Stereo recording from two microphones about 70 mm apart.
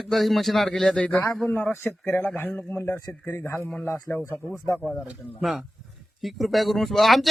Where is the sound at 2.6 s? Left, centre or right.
Left.